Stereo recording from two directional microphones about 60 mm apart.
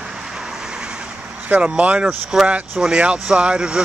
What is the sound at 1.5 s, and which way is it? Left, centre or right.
Speech, right.